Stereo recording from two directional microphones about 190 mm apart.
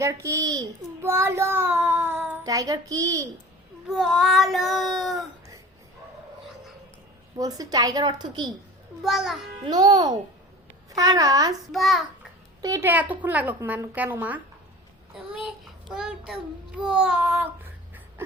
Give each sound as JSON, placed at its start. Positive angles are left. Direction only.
{"t": 0.0, "sound": "a child's voice", "side_deg": -15}
{"t": 3.8, "sound": "child singing", "side_deg": 0}
{"t": 7.3, "sound": "a woman's voice", "side_deg": -20}
{"t": 9.0, "sound": "child singing", "side_deg": 0}
{"t": 9.6, "sound": "a woman's voice", "side_deg": -20}
{"t": 11.7, "sound": "child singing", "side_deg": 0}
{"t": 12.6, "sound": "a child's voice", "side_deg": -15}